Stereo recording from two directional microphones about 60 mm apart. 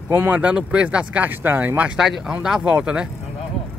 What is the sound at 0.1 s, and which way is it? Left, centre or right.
Speech, right.